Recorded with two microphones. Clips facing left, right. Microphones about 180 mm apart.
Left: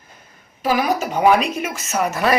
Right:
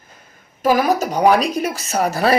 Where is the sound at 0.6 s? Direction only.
45° right (ahead or behind).